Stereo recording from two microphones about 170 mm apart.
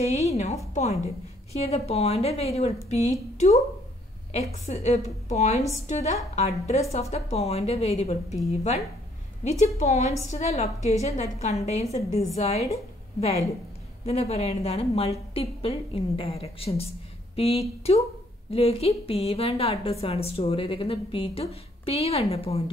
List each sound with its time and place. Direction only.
0.0 s a sound: 40° left (ahead or behind)
0.7 s a woman's voice: 40° left (ahead or behind)
14.0 s a woman's voice: 40° left (ahead or behind)